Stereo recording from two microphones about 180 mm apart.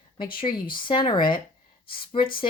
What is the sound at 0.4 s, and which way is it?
Speech, 25° left (ahead or behind).